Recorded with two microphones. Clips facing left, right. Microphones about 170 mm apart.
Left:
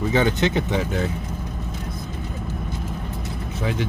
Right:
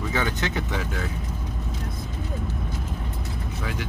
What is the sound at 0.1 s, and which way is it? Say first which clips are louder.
Speech: left 8 dB; 25° left (ahead or behind).